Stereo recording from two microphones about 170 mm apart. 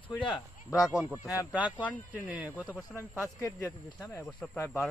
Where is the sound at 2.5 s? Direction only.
Centre (ahead or behind).